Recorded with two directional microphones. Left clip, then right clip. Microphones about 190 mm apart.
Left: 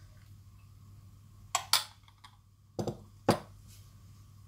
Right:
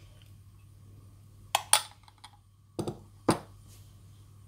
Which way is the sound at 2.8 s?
25° right (ahead or behind).